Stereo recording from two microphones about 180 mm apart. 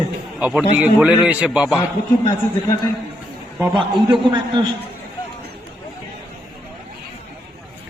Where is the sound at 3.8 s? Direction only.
25° right (ahead or behind).